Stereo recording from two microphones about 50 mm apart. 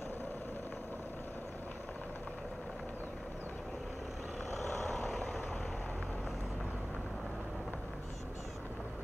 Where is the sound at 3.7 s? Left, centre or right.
Centre.